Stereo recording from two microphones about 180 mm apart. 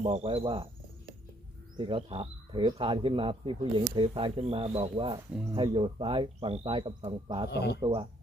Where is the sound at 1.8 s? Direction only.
30° right (ahead or behind).